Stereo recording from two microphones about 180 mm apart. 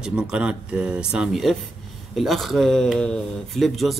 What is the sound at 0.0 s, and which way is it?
Speech, 5° right (ahead or behind).